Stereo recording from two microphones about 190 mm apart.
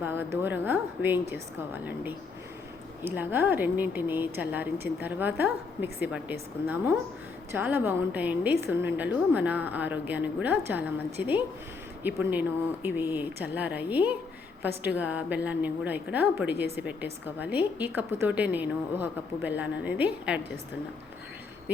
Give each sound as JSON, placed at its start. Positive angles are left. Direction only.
{"t": 0.0, "sound": "a woman's voice", "side_deg": -10}